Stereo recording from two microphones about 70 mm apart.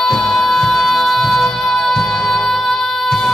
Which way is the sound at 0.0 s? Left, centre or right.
Centre.